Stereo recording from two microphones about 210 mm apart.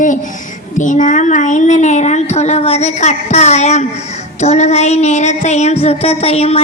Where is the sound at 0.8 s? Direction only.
35° left (ahead or behind).